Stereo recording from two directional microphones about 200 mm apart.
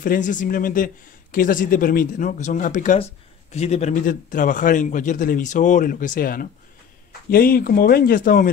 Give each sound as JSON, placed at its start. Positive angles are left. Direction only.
{"t": 0.0, "sound": "speech", "side_deg": 40}